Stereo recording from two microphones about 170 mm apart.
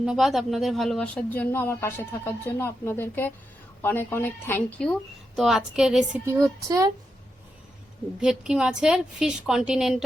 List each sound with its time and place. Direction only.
0.0 s speech: centre (ahead or behind)
5.4 s a woman's voice: 5° right (ahead or behind)
6.2 s speech: 15° right (ahead or behind)
8.2 s a woman's voice: 5° right (ahead or behind)